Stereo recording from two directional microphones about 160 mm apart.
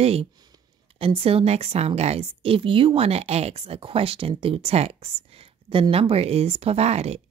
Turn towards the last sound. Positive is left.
turn(degrees=-40)  # may be behind; listen again after turning